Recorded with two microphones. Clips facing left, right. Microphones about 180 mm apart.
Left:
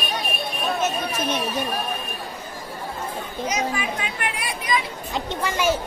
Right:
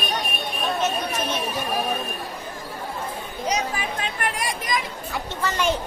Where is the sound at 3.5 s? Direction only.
35° right (ahead or behind).